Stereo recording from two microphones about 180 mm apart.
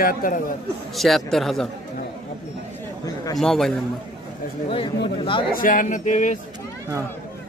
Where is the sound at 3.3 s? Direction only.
Centre (ahead or behind).